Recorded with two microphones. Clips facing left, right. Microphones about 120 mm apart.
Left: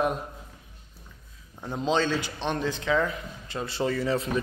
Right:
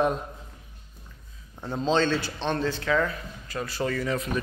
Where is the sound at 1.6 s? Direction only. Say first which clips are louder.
Right 2 dB; 15° left (ahead or behind).